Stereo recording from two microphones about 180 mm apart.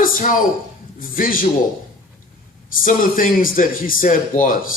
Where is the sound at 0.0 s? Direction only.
50° left (ahead or behind).